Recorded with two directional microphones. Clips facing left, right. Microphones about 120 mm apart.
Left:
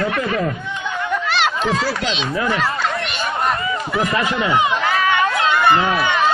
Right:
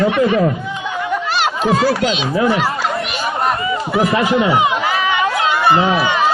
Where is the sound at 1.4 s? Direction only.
5° right (ahead or behind).